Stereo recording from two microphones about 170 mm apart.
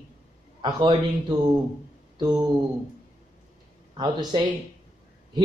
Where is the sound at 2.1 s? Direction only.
25° right (ahead or behind).